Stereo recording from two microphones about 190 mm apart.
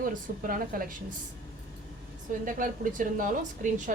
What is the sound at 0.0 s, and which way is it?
Speech, 45° right (ahead or behind).